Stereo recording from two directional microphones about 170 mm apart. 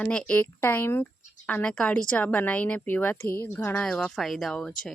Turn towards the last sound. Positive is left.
turn(degrees=5)  # may be behind; listen again after turning